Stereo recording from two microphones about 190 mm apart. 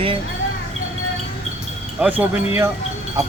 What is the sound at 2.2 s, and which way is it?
Speech, 10° right (ahead or behind).